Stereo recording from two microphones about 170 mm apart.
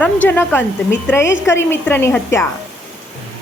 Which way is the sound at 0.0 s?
10° left (ahead or behind).